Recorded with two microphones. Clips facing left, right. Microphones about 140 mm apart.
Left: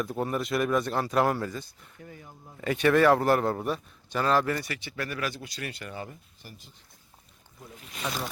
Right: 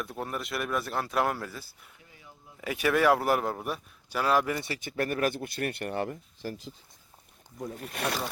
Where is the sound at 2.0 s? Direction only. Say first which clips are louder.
Left 14 dB; 50° left (ahead or behind).